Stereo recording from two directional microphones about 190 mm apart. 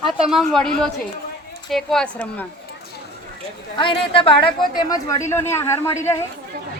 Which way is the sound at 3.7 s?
25° left (ahead or behind).